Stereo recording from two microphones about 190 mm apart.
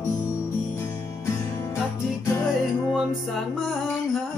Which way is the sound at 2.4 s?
5° right (ahead or behind).